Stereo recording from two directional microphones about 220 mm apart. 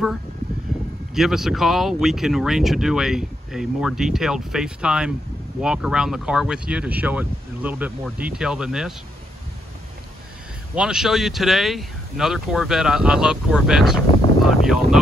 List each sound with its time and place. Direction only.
1.1 s speech: centre (ahead or behind)
10.7 s speech: 5° right (ahead or behind)